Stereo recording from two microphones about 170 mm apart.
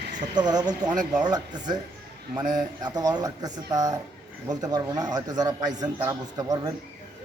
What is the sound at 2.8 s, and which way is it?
A man's voice, 25° right (ahead or behind).